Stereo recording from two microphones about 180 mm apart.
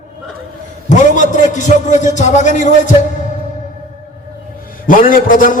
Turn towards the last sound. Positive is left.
turn(degrees=50)  # may be behind; listen again after turning